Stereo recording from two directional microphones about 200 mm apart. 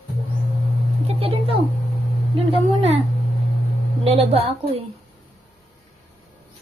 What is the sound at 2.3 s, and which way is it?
Speech, 30° right (ahead or behind).